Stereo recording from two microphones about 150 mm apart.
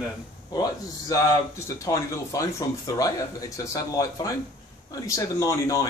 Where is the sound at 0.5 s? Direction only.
25° left (ahead or behind).